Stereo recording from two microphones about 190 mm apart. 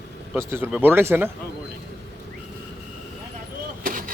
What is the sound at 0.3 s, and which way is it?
Speech, 15° right (ahead or behind).